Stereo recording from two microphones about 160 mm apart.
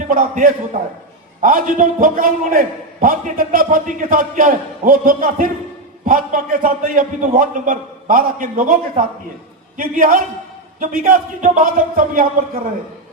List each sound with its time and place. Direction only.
0.1 s a man's voice: 60° right (ahead or behind)